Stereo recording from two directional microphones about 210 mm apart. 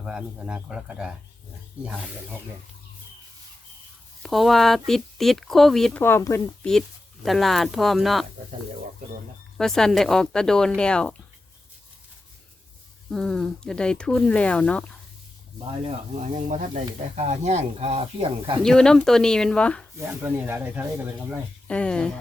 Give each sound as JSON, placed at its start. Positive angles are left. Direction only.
{"t": 0.0, "sound": "speech", "side_deg": -5}
{"t": 4.2, "sound": "speech", "side_deg": 0}
{"t": 6.7, "sound": "speech", "side_deg": 0}
{"t": 9.6, "sound": "speech", "side_deg": 0}
{"t": 13.1, "sound": "speech", "side_deg": 0}
{"t": 16.1, "sound": "speech", "side_deg": -35}
{"t": 18.6, "sound": "speech", "side_deg": 5}
{"t": 20.0, "sound": "speech", "side_deg": -10}
{"t": 21.7, "sound": "speech", "side_deg": 5}